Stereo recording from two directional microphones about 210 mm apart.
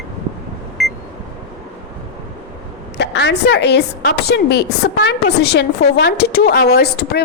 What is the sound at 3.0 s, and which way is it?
A woman's voice, 55° left (ahead or behind).